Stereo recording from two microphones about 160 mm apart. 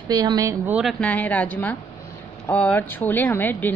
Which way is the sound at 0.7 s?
Centre (ahead or behind).